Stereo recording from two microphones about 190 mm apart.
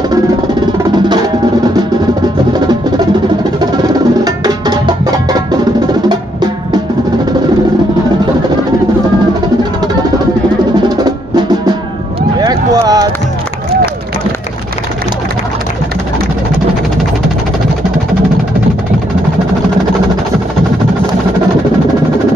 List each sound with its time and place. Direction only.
0.9 s music: 25° right (ahead or behind)
3.7 s music: 20° right (ahead or behind)
12.4 s a sound: 20° right (ahead or behind)